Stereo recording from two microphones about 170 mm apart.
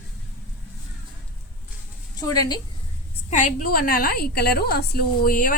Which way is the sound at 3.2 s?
50° left (ahead or behind).